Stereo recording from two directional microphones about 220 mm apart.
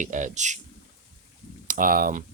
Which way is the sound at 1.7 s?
40° right (ahead or behind).